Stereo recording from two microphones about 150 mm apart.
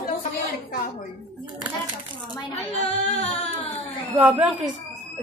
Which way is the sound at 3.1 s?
50° left (ahead or behind).